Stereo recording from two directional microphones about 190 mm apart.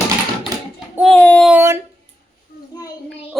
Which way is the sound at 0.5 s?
20° right (ahead or behind).